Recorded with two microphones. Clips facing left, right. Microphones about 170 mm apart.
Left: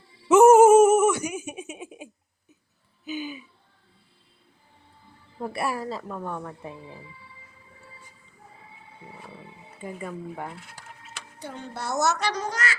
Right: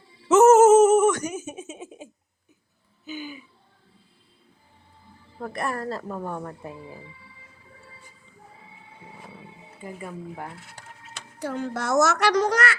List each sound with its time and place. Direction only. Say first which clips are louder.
0.3 s a sound: even; 10° left (ahead or behind)
5.4 s a woman's voice: left 1 dB; 10° left (ahead or behind)
9.8 s a woman's voice: left 2 dB; 5° right (ahead or behind)
11.3 s a child's voice: right 8 dB; 90° right; by 12.7 s 70° right (ahead or behind)